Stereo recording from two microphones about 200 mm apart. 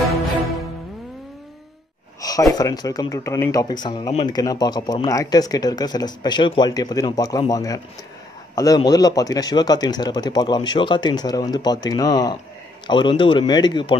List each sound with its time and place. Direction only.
2.2 s speech: 20° left (ahead or behind)